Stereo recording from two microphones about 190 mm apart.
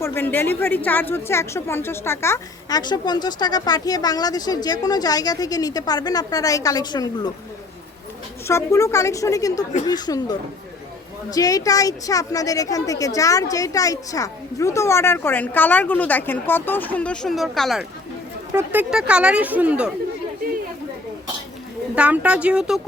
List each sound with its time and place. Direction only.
0.0 s a woman's voice: 10° left (ahead or behind)
8.4 s a woman's voice: 15° left (ahead or behind); by 19.9 s 5° right (ahead or behind)
21.9 s speech: 5° right (ahead or behind)